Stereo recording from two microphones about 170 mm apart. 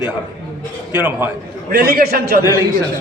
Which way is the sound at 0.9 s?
10° right (ahead or behind).